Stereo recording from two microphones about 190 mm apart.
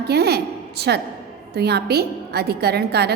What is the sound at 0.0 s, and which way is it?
A woman's voice, 60° right (ahead or behind).